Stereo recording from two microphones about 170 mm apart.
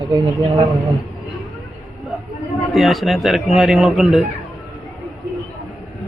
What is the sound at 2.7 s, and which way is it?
Speech, centre (ahead or behind).